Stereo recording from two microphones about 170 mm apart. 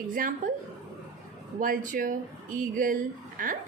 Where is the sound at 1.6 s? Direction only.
50° right (ahead or behind).